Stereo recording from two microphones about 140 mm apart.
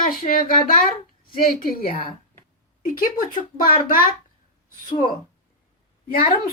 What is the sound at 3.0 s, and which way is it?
A child's voice, 75° left (ahead or behind).